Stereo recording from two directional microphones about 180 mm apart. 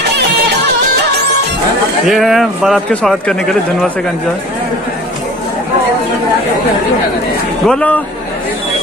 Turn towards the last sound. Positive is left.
turn(degrees=5)  # may be behind; listen again after turning